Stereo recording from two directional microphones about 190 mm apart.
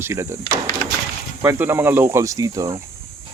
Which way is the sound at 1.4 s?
10° right (ahead or behind).